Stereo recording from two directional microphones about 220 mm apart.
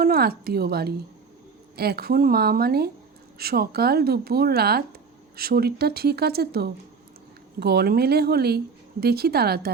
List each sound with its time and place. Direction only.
0.0 s speech: 45° right (ahead or behind)